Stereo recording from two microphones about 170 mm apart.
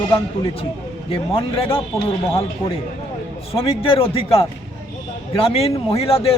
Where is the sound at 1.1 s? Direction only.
35° left (ahead or behind).